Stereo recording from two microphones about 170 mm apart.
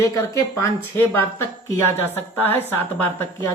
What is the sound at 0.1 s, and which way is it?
A woman's voice, 20° left (ahead or behind).